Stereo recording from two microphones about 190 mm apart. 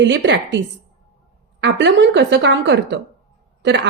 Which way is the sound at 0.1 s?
70° right (ahead or behind).